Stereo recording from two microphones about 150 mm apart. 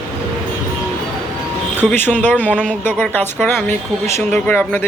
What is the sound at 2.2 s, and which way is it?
Speech, 10° left (ahead or behind).